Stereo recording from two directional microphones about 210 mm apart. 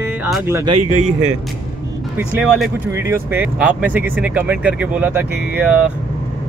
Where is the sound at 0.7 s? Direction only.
30° right (ahead or behind).